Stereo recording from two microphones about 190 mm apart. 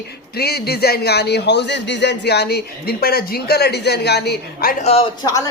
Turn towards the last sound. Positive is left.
turn(degrees=20)  # may be behind; listen again after turning